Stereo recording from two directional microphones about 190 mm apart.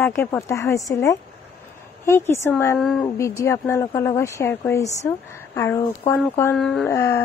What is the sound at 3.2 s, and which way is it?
Speech, 15° left (ahead or behind).